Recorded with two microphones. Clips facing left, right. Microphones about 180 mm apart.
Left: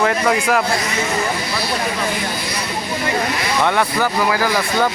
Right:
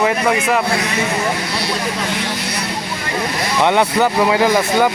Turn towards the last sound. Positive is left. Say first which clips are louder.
# right 4 dB
turn(degrees=-20)  # may be behind; listen again after turning